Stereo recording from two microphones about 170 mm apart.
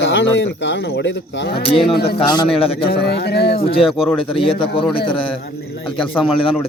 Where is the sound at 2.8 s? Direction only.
70° left (ahead or behind).